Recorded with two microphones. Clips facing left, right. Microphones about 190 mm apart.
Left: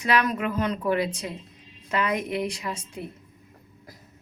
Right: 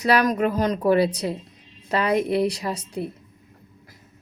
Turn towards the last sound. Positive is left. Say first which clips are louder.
# right 6 dB
turn(degrees=-35)  # may be behind; listen again after turning